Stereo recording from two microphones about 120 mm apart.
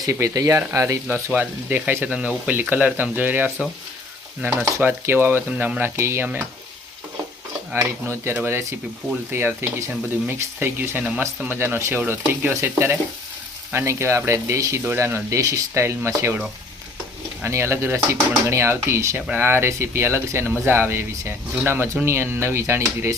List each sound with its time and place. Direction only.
0.0 s speech: 30° right (ahead or behind)
1.4 s speech: 15° right (ahead or behind)
4.8 s speech: 15° right (ahead or behind)
7.8 s speech: 20° right (ahead or behind)